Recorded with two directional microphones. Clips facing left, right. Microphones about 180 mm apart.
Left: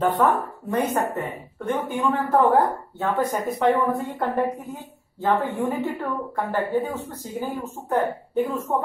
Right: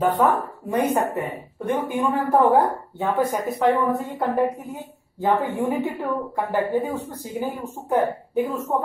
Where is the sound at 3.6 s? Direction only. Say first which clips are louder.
Even; 5° right (ahead or behind).